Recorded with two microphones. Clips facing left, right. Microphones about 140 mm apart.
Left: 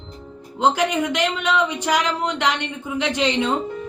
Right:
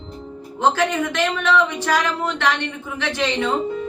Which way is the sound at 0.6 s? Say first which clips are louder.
Even; 15° left (ahead or behind).